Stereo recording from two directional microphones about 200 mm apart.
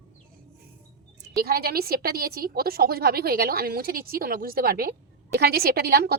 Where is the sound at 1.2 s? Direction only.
50° right (ahead or behind).